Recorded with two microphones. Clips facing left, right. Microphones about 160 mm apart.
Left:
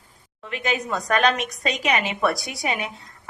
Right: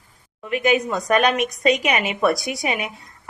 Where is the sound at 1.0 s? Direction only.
15° right (ahead or behind).